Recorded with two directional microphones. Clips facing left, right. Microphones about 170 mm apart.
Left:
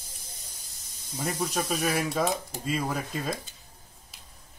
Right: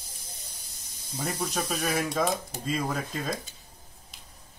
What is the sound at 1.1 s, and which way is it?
Speech, 5° left (ahead or behind).